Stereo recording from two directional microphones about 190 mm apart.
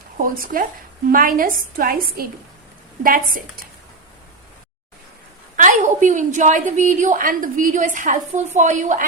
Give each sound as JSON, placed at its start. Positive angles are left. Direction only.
{"t": 0.2, "sound": "a woman's voice", "side_deg": -45}
{"t": 5.5, "sound": "a woman's voice", "side_deg": -40}